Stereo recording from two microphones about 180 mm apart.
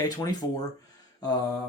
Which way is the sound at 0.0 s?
20° left (ahead or behind).